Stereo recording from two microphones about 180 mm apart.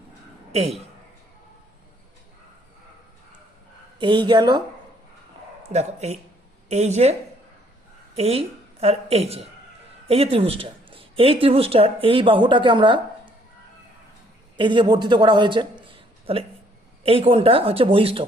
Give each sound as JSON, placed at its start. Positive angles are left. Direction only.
{"t": 0.5, "sound": "speech", "side_deg": -35}
{"t": 4.0, "sound": "speech", "side_deg": -25}
{"t": 5.6, "sound": "a woman's voice", "side_deg": -40}
{"t": 14.5, "sound": "speech", "side_deg": -25}